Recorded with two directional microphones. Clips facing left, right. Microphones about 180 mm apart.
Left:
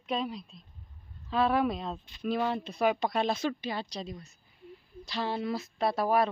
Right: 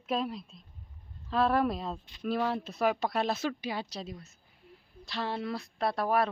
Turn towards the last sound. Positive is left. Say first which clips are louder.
# left 2 dB
turn(degrees=0)  # may be behind; listen again after turning